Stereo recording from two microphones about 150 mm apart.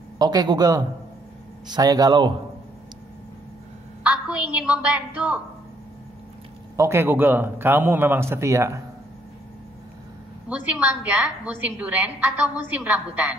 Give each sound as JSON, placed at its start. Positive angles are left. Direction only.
{"t": 0.2, "sound": "speech", "side_deg": -25}
{"t": 4.0, "sound": "a woman's voice", "side_deg": -10}
{"t": 6.8, "sound": "a woman's voice", "side_deg": -15}
{"t": 10.5, "sound": "a woman's voice", "side_deg": -10}